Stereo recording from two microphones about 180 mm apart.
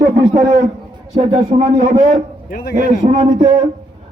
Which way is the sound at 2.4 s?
50° left (ahead or behind).